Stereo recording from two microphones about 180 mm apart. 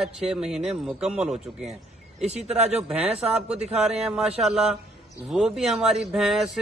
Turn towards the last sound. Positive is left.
turn(degrees=0)  # may be behind; listen again after turning